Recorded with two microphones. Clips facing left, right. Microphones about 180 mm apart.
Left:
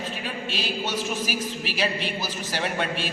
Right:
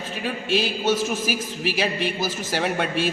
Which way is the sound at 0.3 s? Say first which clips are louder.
Right 10 dB; 45° right (ahead or behind).